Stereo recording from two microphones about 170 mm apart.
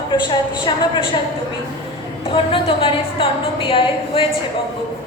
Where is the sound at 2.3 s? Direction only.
30° left (ahead or behind).